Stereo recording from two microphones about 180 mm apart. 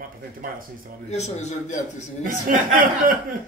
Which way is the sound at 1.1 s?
40° left (ahead or behind).